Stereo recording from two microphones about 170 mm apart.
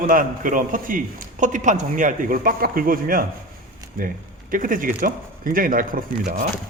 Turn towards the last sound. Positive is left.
turn(degrees=-55)  # may be behind; listen again after turning